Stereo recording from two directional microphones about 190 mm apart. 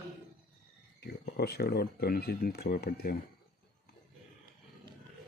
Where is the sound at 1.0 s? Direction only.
60° left (ahead or behind).